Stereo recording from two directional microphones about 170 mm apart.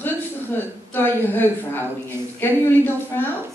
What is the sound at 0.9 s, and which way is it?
Speech, 10° left (ahead or behind).